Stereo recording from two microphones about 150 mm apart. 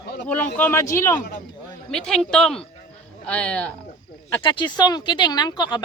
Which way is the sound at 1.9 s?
5° left (ahead or behind).